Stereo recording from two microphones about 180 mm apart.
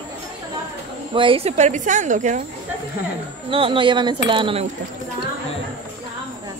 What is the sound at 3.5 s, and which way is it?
Speech, 30° right (ahead or behind).